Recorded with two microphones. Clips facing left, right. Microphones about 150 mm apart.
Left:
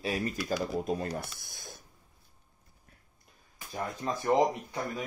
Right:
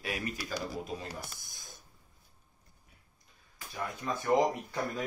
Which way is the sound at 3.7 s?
30° left (ahead or behind).